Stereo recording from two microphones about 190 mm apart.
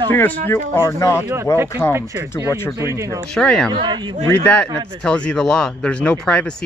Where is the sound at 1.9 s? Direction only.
15° right (ahead or behind).